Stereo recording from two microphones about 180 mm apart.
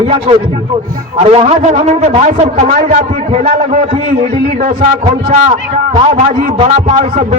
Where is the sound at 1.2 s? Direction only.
35° right (ahead or behind).